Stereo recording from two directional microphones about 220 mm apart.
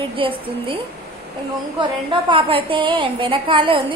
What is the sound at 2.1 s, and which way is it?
A woman's voice, 20° right (ahead or behind).